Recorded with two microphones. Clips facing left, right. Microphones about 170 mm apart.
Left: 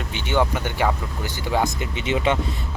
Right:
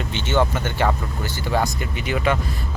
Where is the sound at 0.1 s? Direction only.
10° left (ahead or behind).